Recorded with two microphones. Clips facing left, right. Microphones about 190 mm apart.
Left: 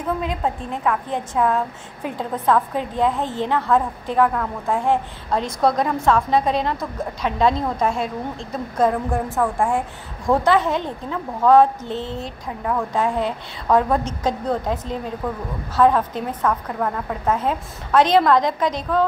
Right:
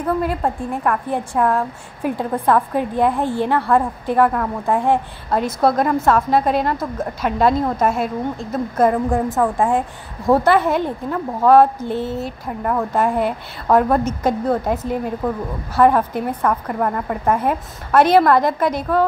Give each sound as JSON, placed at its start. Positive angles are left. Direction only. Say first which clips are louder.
{"t": 0.2, "sound": "a woman's voice", "louder": "right 3 dB", "side_deg": -10}
{"t": 2.0, "sound": "a woman's voice", "louder": "right 3 dB", "side_deg": -10}
{"t": 5.3, "sound": "a woman's voice", "louder": "right 3 dB", "side_deg": -5}
{"t": 10.2, "sound": "a woman's voice", "louder": "right 3 dB", "side_deg": -5}